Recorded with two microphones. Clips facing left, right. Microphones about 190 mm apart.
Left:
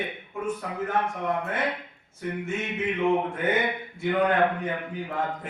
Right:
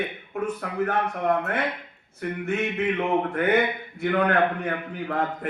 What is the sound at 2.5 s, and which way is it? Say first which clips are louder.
A man's voice: right 6 dB; 65° right (ahead or behind).